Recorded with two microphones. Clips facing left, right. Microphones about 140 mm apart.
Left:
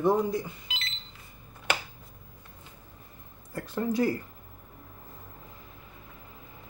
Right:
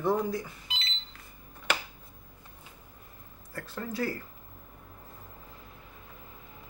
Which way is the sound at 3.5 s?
20° left (ahead or behind).